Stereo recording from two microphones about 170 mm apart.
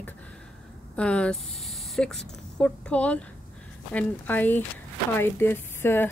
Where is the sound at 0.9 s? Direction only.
5° left (ahead or behind).